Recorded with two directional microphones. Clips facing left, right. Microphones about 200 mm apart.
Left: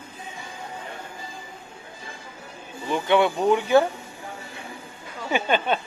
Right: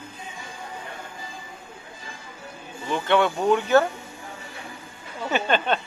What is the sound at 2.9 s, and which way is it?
Speech, 10° left (ahead or behind).